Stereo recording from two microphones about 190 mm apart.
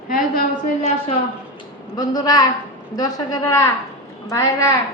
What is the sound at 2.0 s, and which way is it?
A woman's voice, 20° left (ahead or behind).